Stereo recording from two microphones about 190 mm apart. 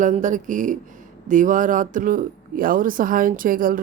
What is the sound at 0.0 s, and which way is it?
Speech, 40° right (ahead or behind).